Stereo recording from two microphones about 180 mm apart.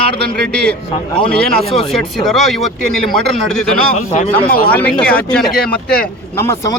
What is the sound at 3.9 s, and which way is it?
Speech, 40° left (ahead or behind).